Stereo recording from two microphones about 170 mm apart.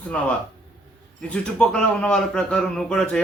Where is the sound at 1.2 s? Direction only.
5° left (ahead or behind).